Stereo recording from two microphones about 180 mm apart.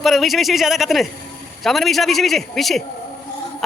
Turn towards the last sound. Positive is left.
turn(degrees=0)  # may be behind; listen again after turning